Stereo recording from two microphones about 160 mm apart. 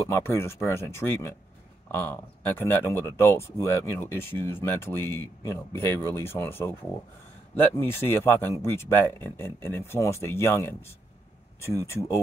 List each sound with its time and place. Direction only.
0.0 s speech: 15° left (ahead or behind)
7.7 s speech: 15° left (ahead or behind)